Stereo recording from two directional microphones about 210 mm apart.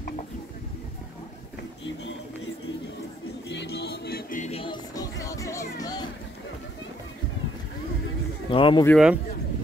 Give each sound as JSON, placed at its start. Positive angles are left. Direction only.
{"t": 3.4, "sound": "music", "side_deg": 55}
{"t": 8.5, "sound": "speech", "side_deg": 25}
{"t": 8.8, "sound": "speech", "side_deg": 0}